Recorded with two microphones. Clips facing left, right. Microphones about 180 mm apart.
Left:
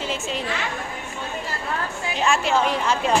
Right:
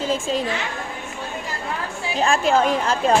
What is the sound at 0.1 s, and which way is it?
Speech, 40° right (ahead or behind).